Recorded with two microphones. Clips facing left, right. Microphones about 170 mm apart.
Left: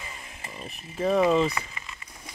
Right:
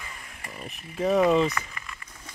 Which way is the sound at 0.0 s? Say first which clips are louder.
Left 1 dB; 20° left (ahead or behind).